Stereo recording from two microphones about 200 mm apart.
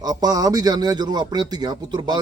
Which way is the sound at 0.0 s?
20° right (ahead or behind).